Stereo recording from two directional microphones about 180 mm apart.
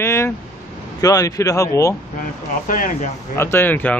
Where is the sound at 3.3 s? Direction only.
15° left (ahead or behind).